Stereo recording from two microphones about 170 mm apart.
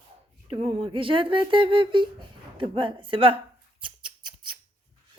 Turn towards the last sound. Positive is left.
turn(degrees=-30)  # may be behind; listen again after turning